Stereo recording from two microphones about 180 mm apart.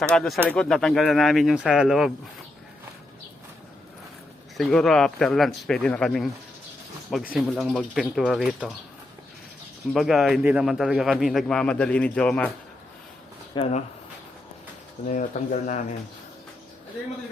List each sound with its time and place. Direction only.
0.1 s a man's voice: 5° left (ahead or behind)
4.5 s a man's voice: centre (ahead or behind)
7.3 s a man's voice: centre (ahead or behind)
9.9 s a man's voice: centre (ahead or behind)
13.5 s speech: 35° left (ahead or behind)
15.1 s speech: 45° left (ahead or behind)